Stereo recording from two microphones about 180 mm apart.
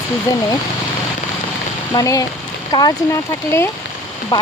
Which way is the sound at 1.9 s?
20° left (ahead or behind).